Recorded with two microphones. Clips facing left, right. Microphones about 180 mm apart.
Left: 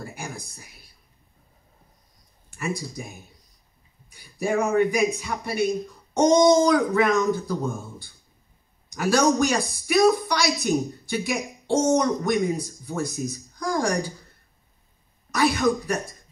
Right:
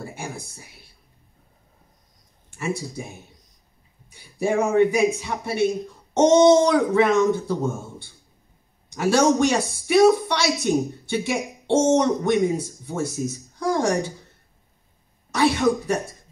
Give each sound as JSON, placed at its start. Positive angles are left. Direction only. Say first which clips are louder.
{"t": 0.0, "sound": "a sound", "louder": "right 2 dB", "side_deg": -25}
{"t": 2.5, "sound": "a woman's voice", "louder": "right 2 dB", "side_deg": -25}
{"t": 15.3, "sound": "a woman's voice", "louder": "right 2 dB", "side_deg": -25}